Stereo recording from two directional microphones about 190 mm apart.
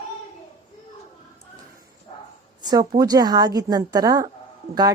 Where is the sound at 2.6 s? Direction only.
20° right (ahead or behind).